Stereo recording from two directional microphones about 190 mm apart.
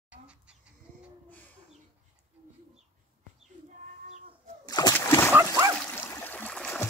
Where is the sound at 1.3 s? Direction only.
10° left (ahead or behind).